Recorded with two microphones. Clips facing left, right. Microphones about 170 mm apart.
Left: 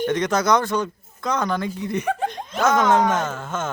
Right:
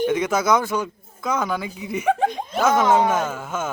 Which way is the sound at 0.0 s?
5° right (ahead or behind).